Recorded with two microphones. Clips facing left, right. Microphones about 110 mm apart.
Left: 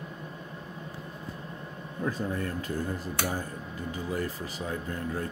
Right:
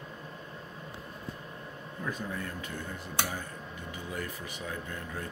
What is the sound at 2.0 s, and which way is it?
Speech, 35° left (ahead or behind).